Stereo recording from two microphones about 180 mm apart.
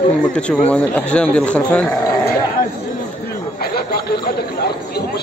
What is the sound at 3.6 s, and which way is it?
Speech, 60° left (ahead or behind).